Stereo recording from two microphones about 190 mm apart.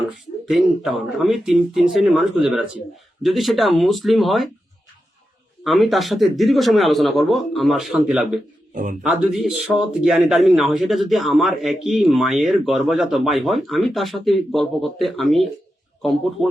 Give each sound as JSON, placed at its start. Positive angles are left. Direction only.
{"t": 0.4, "sound": "speech", "side_deg": 0}
{"t": 5.6, "sound": "speech", "side_deg": 0}
{"t": 8.7, "sound": "a man's voice", "side_deg": -45}
{"t": 9.0, "sound": "speech", "side_deg": 0}